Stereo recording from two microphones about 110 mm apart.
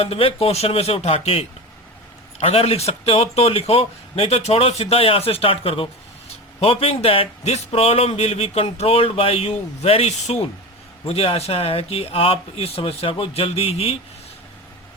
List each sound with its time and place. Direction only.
0.0 s speech: 60° left (ahead or behind); by 10.3 s 75° left (ahead or behind)
11.0 s speech: 60° left (ahead or behind)